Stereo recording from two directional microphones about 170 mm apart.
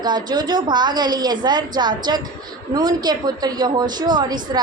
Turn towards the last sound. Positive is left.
turn(degrees=-25)  # may be behind; listen again after turning